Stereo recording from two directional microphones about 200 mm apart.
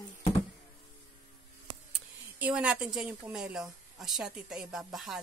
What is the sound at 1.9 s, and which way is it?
Speech, 5° right (ahead or behind).